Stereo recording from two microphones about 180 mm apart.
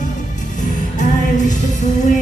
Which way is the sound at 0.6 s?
45° left (ahead or behind).